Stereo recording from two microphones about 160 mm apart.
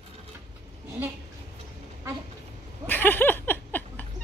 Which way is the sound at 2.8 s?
10° left (ahead or behind).